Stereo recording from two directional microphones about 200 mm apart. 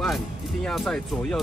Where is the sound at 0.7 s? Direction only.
5° left (ahead or behind).